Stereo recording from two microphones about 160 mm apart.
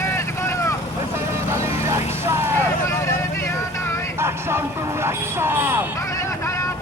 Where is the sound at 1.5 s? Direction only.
15° right (ahead or behind).